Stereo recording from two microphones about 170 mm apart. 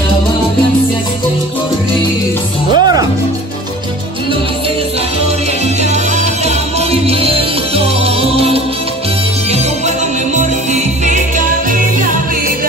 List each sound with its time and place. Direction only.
2.7 s music: 25° right (ahead or behind)
5.8 s music: 40° right (ahead or behind)
9.5 s music: 45° right (ahead or behind)